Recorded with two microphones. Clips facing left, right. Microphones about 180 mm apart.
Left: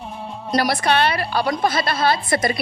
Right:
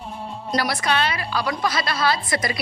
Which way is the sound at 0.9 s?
65° left (ahead or behind).